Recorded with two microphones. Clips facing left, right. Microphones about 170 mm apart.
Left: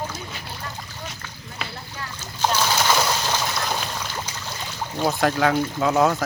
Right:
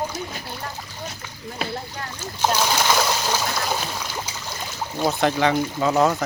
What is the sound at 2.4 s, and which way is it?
Speech, 10° right (ahead or behind).